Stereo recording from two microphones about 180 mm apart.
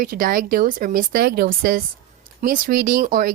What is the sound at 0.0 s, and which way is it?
Speech, 50° right (ahead or behind).